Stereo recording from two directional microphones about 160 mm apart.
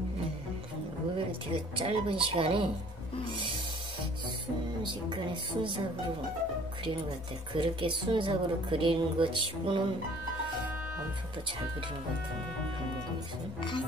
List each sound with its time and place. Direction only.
1.1 s a woman's voice: 35° right (ahead or behind)
4.8 s speech: 30° right (ahead or behind)
7.5 s a woman's voice: 30° right (ahead or behind)